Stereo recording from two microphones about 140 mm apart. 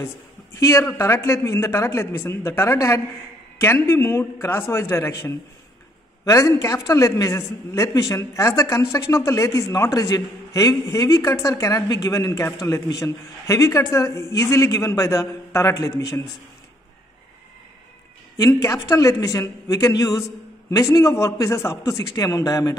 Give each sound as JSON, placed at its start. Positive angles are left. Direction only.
{"t": 0.6, "sound": "a man's voice", "side_deg": 20}
{"t": 18.4, "sound": "a man's voice", "side_deg": 20}